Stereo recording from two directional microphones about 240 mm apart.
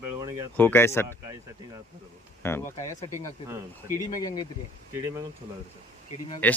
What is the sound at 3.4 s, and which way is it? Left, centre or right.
Speech, centre.